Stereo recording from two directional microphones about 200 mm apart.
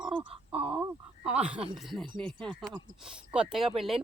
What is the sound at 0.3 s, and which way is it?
Wail, 25° right (ahead or behind).